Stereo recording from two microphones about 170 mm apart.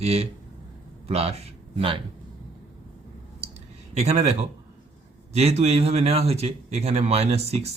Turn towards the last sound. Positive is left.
turn(degrees=-40)  # may be behind; listen again after turning